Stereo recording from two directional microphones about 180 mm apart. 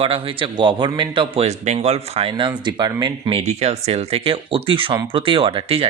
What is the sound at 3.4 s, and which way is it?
Speech, 35° right (ahead or behind).